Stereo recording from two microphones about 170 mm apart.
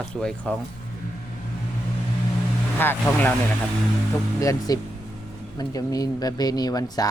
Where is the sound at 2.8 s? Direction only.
10° left (ahead or behind).